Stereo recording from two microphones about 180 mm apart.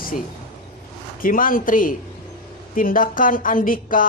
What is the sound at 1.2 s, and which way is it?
Speech, 50° left (ahead or behind).